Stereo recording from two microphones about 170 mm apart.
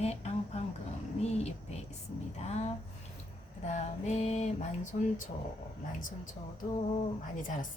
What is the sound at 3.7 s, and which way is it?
Speech, 40° left (ahead or behind).